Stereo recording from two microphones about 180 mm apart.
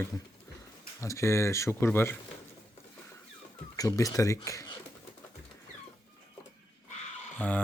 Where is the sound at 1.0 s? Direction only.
15° left (ahead or behind).